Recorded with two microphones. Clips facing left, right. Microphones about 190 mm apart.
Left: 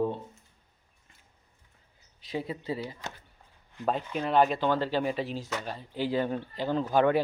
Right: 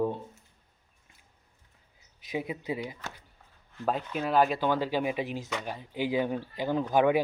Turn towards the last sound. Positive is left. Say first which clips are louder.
# even
turn(degrees=-10)  # may be behind; listen again after turning